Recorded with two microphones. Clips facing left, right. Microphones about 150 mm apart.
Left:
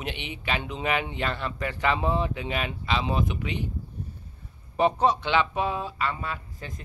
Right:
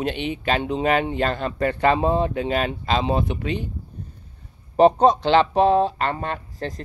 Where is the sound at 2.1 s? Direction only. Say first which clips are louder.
Right 6 dB; 45° right (ahead or behind).